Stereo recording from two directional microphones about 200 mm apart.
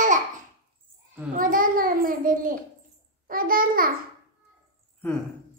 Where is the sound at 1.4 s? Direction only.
45° right (ahead or behind).